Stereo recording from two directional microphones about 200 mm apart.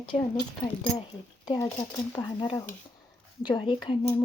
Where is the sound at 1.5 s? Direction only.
15° left (ahead or behind).